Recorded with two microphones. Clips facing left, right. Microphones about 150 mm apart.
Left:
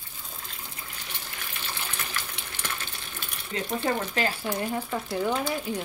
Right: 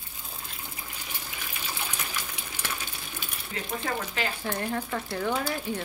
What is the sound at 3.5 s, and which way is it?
Speech, 30° left (ahead or behind).